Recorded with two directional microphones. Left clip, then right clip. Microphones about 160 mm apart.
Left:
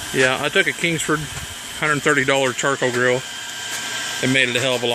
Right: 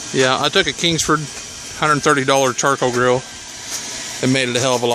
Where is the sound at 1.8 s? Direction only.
15° right (ahead or behind).